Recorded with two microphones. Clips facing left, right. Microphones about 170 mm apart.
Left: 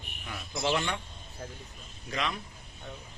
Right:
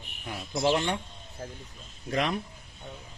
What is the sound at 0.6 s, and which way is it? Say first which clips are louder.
Speech: right 4 dB; 40° right (ahead or behind).